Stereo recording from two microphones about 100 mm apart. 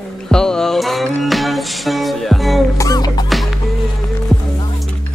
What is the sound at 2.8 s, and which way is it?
Music, 40° left (ahead or behind).